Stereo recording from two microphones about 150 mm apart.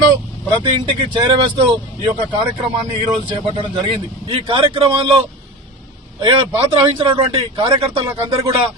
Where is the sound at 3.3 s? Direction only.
35° right (ahead or behind).